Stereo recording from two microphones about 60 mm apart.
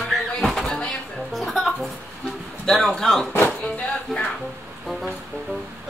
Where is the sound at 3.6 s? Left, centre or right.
Centre.